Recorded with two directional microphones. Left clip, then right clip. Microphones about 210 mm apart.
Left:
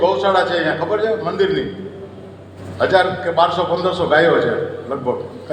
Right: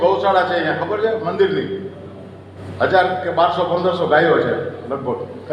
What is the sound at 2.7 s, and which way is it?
A man's voice, 55° left (ahead or behind).